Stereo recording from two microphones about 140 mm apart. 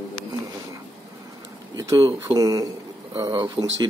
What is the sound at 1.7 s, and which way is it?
Speech, 25° right (ahead or behind).